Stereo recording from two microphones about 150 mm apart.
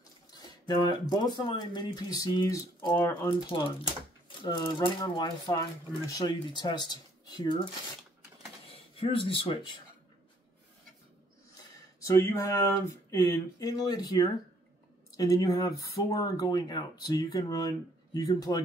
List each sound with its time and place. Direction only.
0.3 s speech: 30° left (ahead or behind)
3.3 s speech: 30° left (ahead or behind)
4.8 s speech: 30° left (ahead or behind)
8.7 s speech: 40° left (ahead or behind)
12.0 s speech: 20° left (ahead or behind)